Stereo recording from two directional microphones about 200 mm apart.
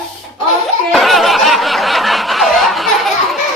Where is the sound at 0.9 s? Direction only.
Centre (ahead or behind).